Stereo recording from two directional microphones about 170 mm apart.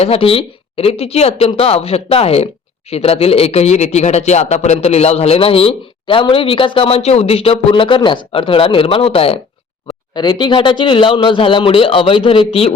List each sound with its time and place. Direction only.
0.0 s speech: 35° left (ahead or behind)